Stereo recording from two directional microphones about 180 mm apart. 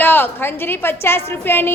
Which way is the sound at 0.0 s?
10° left (ahead or behind).